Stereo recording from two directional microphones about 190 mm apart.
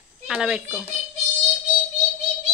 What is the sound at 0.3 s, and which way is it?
Speech, 5° right (ahead or behind).